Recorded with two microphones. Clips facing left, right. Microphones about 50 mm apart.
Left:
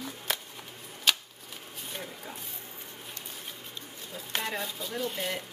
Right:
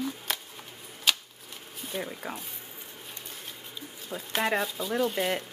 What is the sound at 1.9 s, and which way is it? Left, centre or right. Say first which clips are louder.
Speech: right 7 dB; centre.